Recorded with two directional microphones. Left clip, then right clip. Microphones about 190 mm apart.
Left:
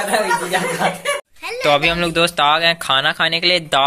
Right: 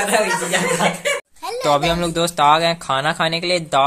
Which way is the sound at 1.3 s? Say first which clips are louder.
Even; 40° right (ahead or behind).